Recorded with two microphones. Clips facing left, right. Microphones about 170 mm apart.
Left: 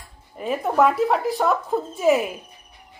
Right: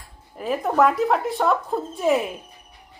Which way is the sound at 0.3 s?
Centre (ahead or behind).